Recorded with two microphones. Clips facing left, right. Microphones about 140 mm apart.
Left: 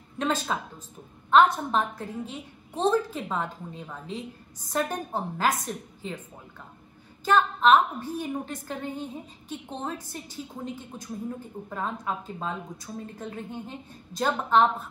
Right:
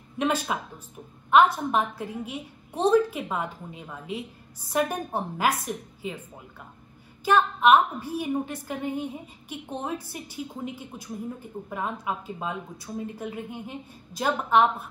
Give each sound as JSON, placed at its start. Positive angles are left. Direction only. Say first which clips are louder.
{"t": 0.2, "sound": "a woman's voice", "louder": "right 2 dB", "side_deg": -10}
{"t": 7.2, "sound": "a woman's voice", "louder": "right 1 dB", "side_deg": -10}